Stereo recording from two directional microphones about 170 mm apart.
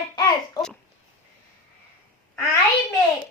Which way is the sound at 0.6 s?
20° left (ahead or behind).